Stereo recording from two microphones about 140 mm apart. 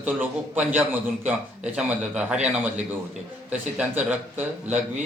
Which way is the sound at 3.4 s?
10° right (ahead or behind).